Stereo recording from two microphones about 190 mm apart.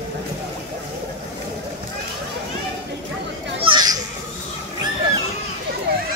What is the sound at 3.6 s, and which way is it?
Children playing, 20° right (ahead or behind).